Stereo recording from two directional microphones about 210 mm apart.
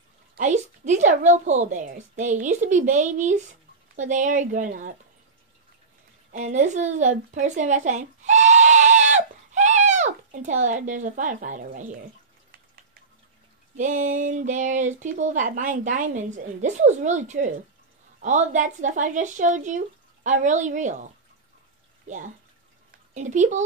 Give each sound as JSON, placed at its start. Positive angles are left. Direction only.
{"t": 0.4, "sound": "speech", "side_deg": -35}
{"t": 6.3, "sound": "speech", "side_deg": -35}
{"t": 13.7, "sound": "speech", "side_deg": -35}